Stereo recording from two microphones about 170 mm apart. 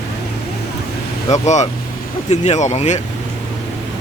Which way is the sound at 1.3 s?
45° left (ahead or behind).